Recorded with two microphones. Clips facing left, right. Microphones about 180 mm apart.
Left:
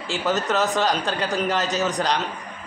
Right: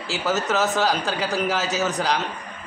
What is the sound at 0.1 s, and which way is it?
A man's voice, 5° right (ahead or behind).